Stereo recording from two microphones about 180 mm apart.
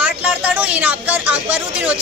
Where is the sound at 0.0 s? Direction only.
5° right (ahead or behind).